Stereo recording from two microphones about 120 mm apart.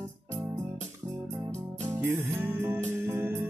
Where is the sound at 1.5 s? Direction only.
20° right (ahead or behind).